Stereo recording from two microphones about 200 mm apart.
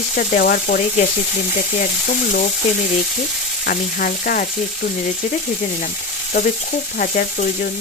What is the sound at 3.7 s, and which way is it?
Frying, 45° left (ahead or behind).